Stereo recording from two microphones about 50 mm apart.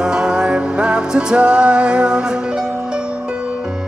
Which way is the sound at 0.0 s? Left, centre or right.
Centre.